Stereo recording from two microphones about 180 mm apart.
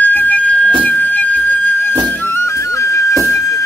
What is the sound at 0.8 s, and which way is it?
Music, 10° left (ahead or behind).